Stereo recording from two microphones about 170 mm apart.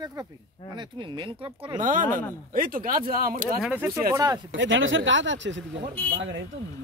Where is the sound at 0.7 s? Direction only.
25° right (ahead or behind).